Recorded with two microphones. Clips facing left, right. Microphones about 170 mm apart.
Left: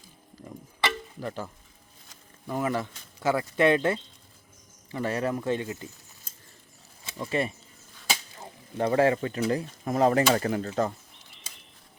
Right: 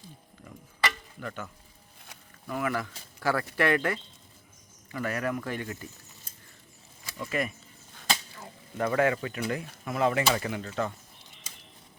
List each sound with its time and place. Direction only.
0.4 s a sound: 30° left (ahead or behind)
2.5 s speech: 30° left (ahead or behind)
7.0 s speech: 30° left (ahead or behind)